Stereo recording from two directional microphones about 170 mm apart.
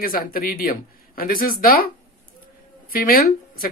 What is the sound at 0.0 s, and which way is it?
Speech, 60° left (ahead or behind).